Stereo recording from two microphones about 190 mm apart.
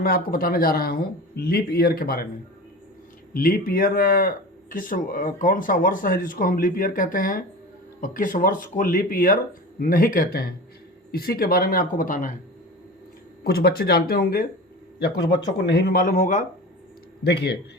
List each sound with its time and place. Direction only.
0.0 s speech: 50° left (ahead or behind)
3.3 s speech: 50° left (ahead or behind)
13.4 s speech: 55° left (ahead or behind)
17.2 s speech: 60° left (ahead or behind)